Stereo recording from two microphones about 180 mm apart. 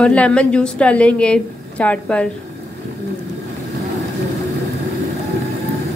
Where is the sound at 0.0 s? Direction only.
5° left (ahead or behind).